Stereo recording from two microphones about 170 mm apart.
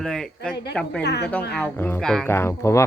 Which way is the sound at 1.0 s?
75° left (ahead or behind).